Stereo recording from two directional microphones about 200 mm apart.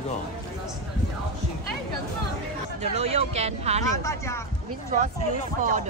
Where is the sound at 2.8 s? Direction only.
30° right (ahead or behind).